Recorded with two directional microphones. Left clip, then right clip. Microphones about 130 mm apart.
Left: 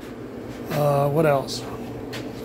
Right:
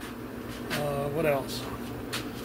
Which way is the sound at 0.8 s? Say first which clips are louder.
Left 12 dB; 70° left (ahead or behind).